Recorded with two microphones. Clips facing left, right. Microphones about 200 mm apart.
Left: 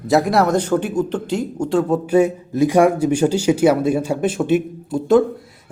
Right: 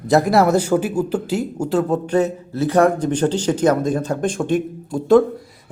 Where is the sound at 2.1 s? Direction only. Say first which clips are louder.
Left 3 dB; 10° left (ahead or behind).